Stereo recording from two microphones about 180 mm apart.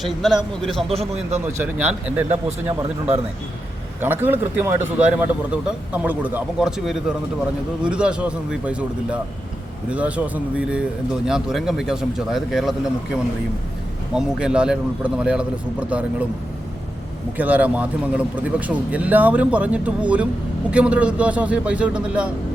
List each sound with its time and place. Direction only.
0.0 s a man's voice: centre (ahead or behind)
0.9 s a man's voice: 35° right (ahead or behind)
1.5 s a man's voice: 10° right (ahead or behind)
14.1 s a man's voice: 5° right (ahead or behind)
17.3 s a man's voice: 10° right (ahead or behind)